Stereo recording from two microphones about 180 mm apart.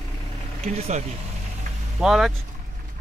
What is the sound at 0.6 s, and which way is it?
Speech, 35° right (ahead or behind).